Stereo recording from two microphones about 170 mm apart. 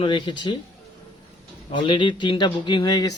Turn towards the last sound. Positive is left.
turn(degrees=25)  # may be behind; listen again after turning